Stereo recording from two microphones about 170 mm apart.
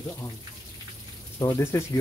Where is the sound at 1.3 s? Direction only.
20° left (ahead or behind).